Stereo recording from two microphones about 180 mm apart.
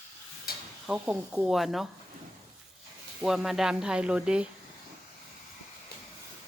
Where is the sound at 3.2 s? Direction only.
Centre (ahead or behind).